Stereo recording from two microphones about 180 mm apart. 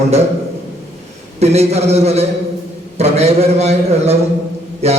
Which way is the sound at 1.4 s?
35° right (ahead or behind).